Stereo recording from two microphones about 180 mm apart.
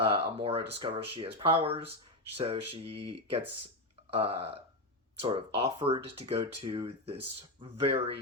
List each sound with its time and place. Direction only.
0.0 s speech: 30° right (ahead or behind)